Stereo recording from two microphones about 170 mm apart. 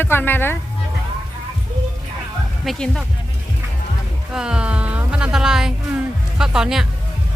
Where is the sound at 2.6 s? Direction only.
Centre (ahead or behind).